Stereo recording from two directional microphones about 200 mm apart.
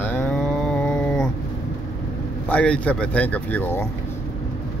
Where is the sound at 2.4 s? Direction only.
5° left (ahead or behind).